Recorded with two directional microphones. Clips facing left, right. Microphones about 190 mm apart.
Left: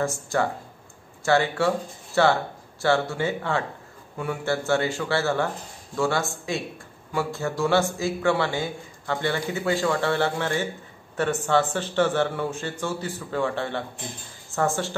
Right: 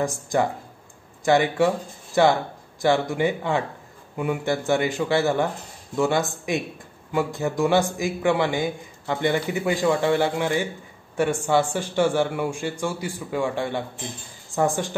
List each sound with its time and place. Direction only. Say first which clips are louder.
0.0 s a man's voice: right 2 dB; 15° right (ahead or behind)